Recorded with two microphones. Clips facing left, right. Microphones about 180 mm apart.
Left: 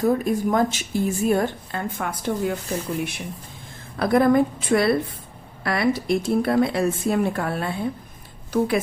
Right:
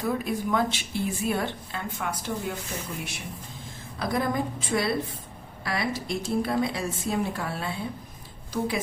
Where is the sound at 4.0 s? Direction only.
60° left (ahead or behind).